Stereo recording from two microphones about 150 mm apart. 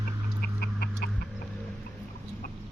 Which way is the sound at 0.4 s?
90° left.